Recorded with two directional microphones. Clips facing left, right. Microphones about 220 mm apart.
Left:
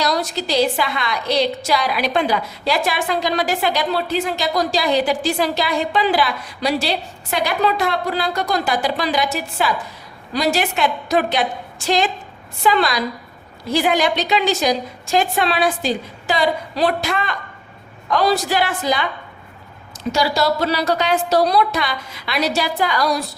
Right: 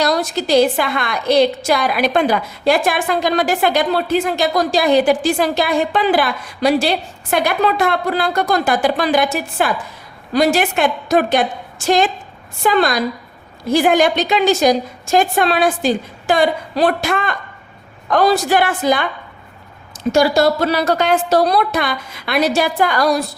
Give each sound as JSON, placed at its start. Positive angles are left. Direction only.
{"t": 0.0, "sound": "a woman's voice", "side_deg": -50}
{"t": 20.1, "sound": "a woman's voice", "side_deg": -50}